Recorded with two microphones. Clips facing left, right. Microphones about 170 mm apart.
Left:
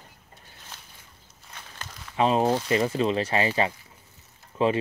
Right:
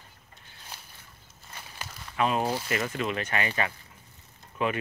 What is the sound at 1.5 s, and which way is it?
Walk, 10° right (ahead or behind).